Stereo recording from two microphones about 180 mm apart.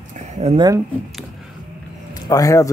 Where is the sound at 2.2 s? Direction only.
20° left (ahead or behind).